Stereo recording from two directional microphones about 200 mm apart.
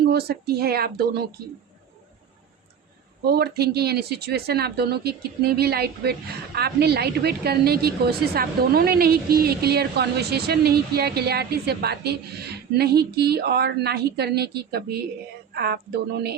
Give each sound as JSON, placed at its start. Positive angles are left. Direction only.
{"t": 0.0, "sound": "speech", "side_deg": -50}
{"t": 3.2, "sound": "speech", "side_deg": -50}